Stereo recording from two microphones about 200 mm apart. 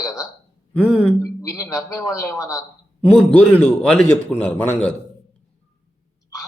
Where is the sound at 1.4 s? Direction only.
15° left (ahead or behind).